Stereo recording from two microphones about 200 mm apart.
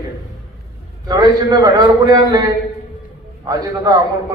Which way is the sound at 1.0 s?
20° right (ahead or behind).